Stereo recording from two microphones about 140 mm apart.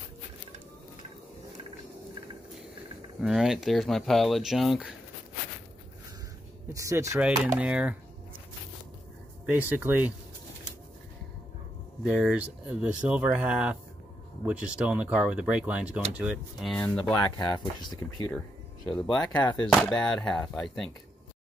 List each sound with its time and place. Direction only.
3.2 s speech: 5° right (ahead or behind)
6.7 s speech: 20° right (ahead or behind)
7.5 s speech: 5° right (ahead or behind)
9.6 s speech: 15° right (ahead or behind)
12.0 s speech: 5° right (ahead or behind)
16.6 s speech: 5° left (ahead or behind)
17.1 s speech: 25° left (ahead or behind)
18.9 s speech: 5° left (ahead or behind)
19.4 s speech: 30° left (ahead or behind)
19.7 s speech: 5° left (ahead or behind)